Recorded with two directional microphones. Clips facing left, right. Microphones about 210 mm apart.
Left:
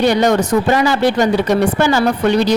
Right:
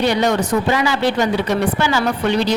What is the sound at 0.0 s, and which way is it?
Speech, 45° left (ahead or behind).